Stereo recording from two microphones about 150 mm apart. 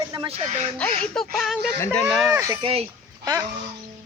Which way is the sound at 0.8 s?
5° left (ahead or behind).